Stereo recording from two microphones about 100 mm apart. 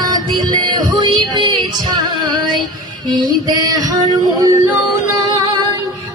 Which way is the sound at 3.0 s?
40° right (ahead or behind).